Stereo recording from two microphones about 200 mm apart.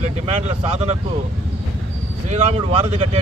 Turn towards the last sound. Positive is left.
turn(degrees=-30)  # may be behind; listen again after turning